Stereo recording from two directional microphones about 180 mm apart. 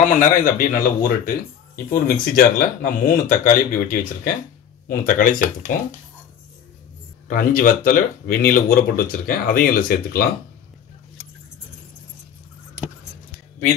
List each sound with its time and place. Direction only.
0.0 s speech: 45° left (ahead or behind)
7.2 s speech: 50° left (ahead or behind)